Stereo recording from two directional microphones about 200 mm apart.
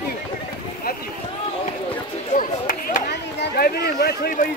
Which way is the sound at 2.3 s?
40° left (ahead or behind).